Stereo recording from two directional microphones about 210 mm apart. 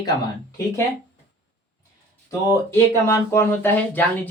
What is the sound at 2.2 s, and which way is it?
Speech, 15° left (ahead or behind).